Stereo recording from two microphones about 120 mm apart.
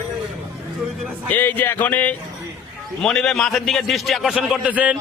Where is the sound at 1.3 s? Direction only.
15° left (ahead or behind).